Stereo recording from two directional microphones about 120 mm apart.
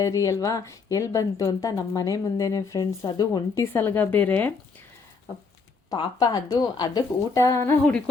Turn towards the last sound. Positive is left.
turn(degrees=20)  # may be behind; listen again after turning